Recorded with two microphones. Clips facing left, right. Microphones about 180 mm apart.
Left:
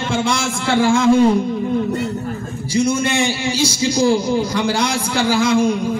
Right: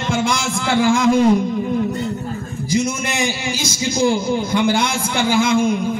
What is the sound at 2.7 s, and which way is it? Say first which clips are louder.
A man's voice: left 3 dB; 30° left (ahead or behind).